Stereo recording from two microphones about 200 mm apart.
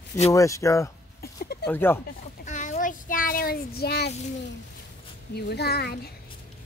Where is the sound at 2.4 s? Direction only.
40° left (ahead or behind); by 4.1 s 55° left (ahead or behind).